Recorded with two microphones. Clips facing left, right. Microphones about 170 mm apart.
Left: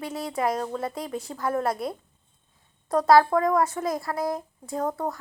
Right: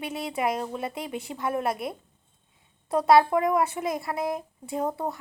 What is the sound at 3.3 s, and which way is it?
A woman's voice, 10° right (ahead or behind).